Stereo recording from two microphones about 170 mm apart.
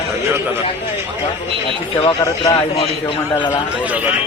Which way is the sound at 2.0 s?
25° left (ahead or behind).